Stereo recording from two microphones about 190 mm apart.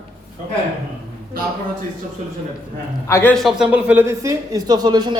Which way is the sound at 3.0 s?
10° left (ahead or behind).